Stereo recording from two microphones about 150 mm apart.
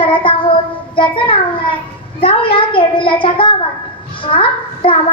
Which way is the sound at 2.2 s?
35° left (ahead or behind).